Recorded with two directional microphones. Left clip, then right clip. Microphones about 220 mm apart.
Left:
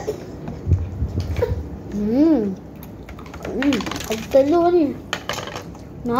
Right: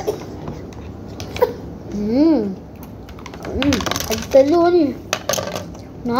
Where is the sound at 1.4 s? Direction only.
70° right (ahead or behind).